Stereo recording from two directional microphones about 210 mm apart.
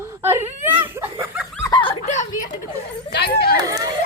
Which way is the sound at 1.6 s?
20° left (ahead or behind).